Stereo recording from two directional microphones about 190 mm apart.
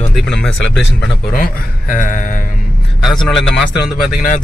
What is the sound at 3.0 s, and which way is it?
Speech, centre (ahead or behind).